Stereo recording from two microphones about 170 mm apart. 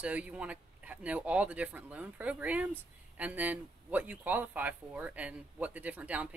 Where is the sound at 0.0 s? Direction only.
5° right (ahead or behind).